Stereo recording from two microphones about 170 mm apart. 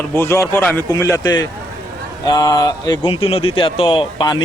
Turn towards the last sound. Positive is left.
turn(degrees=25)  # may be behind; listen again after turning